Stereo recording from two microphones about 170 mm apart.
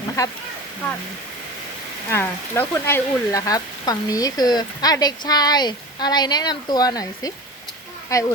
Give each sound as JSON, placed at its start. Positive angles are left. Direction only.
{"t": 0.2, "sound": "speech", "side_deg": 20}
{"t": 2.0, "sound": "speech", "side_deg": 15}